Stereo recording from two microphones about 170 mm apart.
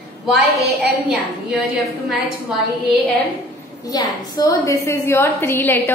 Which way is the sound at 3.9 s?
20° left (ahead or behind).